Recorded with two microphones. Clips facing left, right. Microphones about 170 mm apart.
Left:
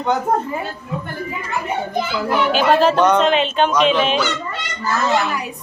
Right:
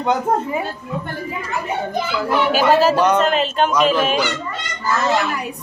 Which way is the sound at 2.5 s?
5° right (ahead or behind).